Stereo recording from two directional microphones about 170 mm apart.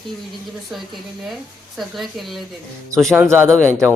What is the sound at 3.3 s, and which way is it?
Speech, 15° right (ahead or behind).